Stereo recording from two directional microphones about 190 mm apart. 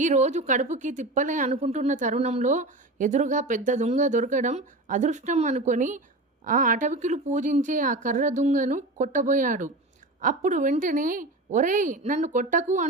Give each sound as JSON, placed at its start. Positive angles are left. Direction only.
{"t": 0.0, "sound": "a woman's voice", "side_deg": -40}